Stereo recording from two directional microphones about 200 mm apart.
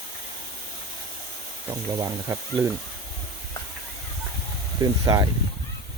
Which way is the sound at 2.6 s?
15° right (ahead or behind).